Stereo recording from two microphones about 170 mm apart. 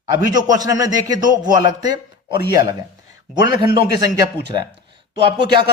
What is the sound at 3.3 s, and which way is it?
Speech, 25° right (ahead or behind).